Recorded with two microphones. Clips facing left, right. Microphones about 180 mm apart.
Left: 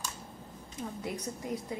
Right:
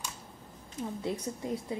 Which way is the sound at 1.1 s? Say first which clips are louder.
Right 2 dB; 25° right (ahead or behind).